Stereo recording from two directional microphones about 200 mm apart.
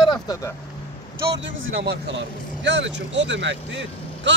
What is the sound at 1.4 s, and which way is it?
Speech, 70° right (ahead or behind).